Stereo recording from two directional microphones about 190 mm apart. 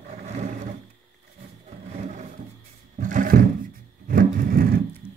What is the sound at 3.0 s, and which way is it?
Roar, 45° right (ahead or behind).